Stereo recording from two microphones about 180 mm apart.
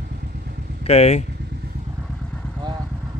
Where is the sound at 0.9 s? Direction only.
35° left (ahead or behind).